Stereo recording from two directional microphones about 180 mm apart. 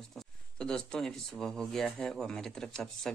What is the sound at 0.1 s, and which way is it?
Speech, 5° left (ahead or behind).